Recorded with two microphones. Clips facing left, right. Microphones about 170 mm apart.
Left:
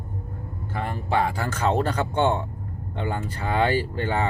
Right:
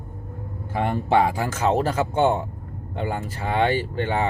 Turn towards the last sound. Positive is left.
turn(degrees=0)  # may be behind; listen again after turning